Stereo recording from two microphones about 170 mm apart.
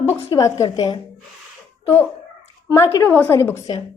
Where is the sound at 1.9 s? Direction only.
10° left (ahead or behind).